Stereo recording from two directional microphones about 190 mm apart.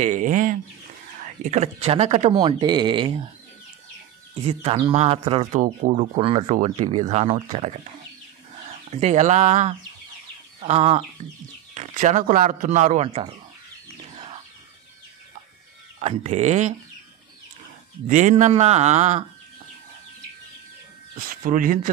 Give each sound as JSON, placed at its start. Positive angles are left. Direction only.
{"t": 0.0, "sound": "speech", "side_deg": -40}
{"t": 2.3, "sound": "speech", "side_deg": -20}
{"t": 4.5, "sound": "speech", "side_deg": -25}
{"t": 8.9, "sound": "speech", "side_deg": -35}
{"t": 16.0, "sound": "speech", "side_deg": -35}
{"t": 18.0, "sound": "speech", "side_deg": -40}
{"t": 21.3, "sound": "speech", "side_deg": -45}